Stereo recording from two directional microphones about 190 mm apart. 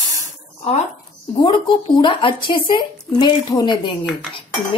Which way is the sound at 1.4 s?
25° left (ahead or behind).